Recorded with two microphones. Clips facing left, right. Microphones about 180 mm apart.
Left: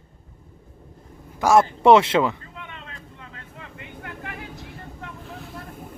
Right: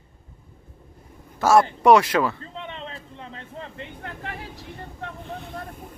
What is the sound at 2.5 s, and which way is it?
Vehicle, 30° right (ahead or behind).